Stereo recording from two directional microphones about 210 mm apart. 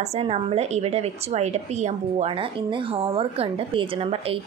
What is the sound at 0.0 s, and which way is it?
A woman's voice, 30° right (ahead or behind).